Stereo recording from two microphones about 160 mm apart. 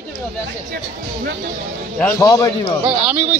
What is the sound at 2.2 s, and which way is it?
Speech, 20° left (ahead or behind).